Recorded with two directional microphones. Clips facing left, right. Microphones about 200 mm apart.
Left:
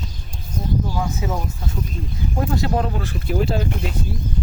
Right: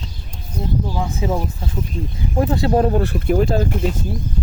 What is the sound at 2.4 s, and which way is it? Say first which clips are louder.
Speech: right 5 dB; 30° right (ahead or behind).